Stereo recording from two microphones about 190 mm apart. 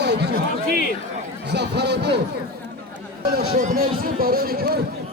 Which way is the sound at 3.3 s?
55° right (ahead or behind).